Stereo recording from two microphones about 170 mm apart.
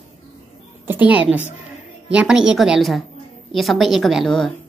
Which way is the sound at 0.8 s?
10° right (ahead or behind).